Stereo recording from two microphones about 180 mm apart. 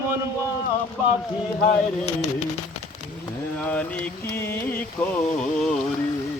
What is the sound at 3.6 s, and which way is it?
Mantra, 10° left (ahead or behind).